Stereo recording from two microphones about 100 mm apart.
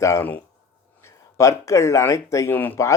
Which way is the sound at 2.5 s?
20° left (ahead or behind).